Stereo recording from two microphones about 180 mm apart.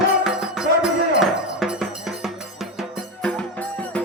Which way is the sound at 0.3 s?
Centre (ahead or behind).